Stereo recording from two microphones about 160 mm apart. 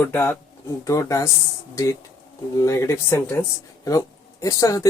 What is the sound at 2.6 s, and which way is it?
Speech, 20° left (ahead or behind).